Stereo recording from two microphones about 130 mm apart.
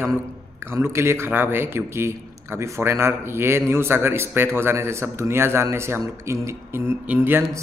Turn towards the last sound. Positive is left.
turn(degrees=-15)  # may be behind; listen again after turning